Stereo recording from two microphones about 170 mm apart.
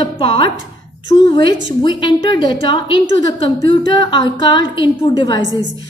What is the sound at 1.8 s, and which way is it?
A woman's voice, 25° left (ahead or behind).